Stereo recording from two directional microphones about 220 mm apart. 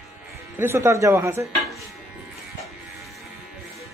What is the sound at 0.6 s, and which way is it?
Speech, 10° right (ahead or behind).